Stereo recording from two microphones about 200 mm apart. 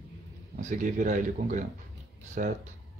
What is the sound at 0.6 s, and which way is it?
Speech, 40° right (ahead or behind).